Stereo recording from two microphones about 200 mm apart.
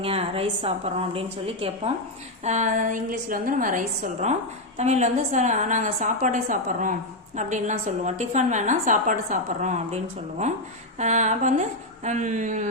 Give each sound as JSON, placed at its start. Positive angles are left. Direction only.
{"t": 0.0, "sound": "a woman's voice", "side_deg": -30}